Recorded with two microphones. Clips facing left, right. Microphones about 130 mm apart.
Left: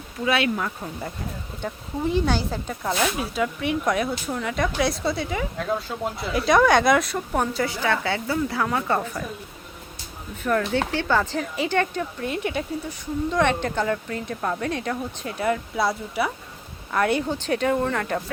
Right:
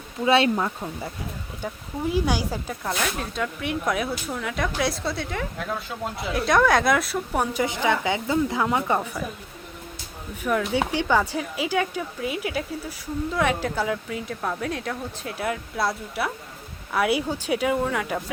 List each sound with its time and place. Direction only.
0.3 s speech: 30° right (ahead or behind)
1.6 s a woman's voice: 10° right (ahead or behind)
2.8 s speech: 5° left (ahead or behind)
7.5 s a woman's voice: 20° right (ahead or behind)
10.4 s a woman's voice: 10° right (ahead or behind)